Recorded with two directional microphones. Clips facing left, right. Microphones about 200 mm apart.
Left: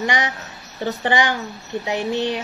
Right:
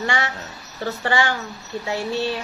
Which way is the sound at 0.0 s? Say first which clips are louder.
Left 2 dB; 15° left (ahead or behind).